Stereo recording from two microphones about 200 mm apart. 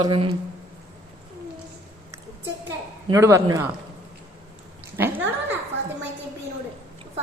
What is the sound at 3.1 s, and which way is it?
Speech, 15° right (ahead or behind).